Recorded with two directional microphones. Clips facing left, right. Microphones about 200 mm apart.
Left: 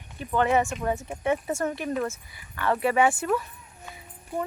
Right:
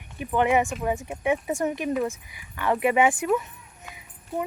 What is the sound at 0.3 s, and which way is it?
Speech, 15° right (ahead or behind).